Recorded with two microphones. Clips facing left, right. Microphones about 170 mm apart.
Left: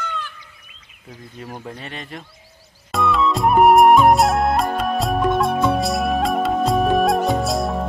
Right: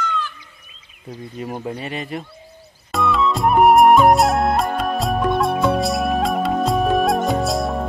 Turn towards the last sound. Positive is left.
turn(degrees=0)  # may be behind; listen again after turning